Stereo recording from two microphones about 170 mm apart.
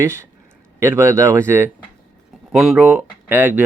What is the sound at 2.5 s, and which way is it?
Speech, 5° right (ahead or behind).